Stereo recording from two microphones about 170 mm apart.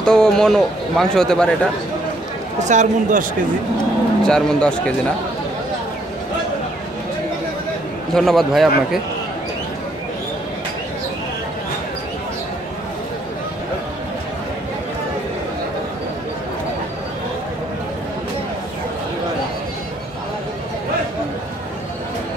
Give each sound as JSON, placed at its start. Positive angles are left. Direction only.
{"t": 0.0, "sound": "a man's voice", "side_deg": 5}
{"t": 2.6, "sound": "speech", "side_deg": -45}
{"t": 4.2, "sound": "a man's voice", "side_deg": 5}
{"t": 8.1, "sound": "a man's voice", "side_deg": 0}